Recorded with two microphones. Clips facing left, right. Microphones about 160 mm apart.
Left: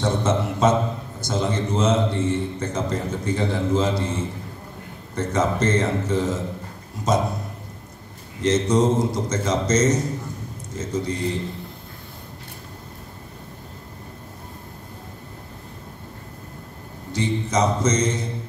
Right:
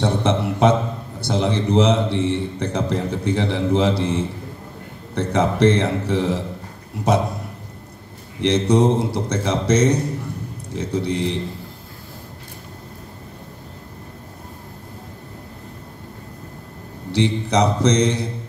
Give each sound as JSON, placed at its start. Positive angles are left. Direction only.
{"t": 0.0, "sound": "a man's voice", "side_deg": -65}
{"t": 8.4, "sound": "a man's voice", "side_deg": -65}
{"t": 17.1, "sound": "a man's voice", "side_deg": -70}